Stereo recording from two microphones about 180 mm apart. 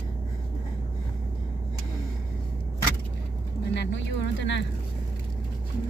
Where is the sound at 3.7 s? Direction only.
80° left.